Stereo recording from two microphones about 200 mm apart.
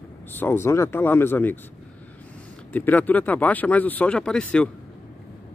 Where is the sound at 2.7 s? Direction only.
10° left (ahead or behind).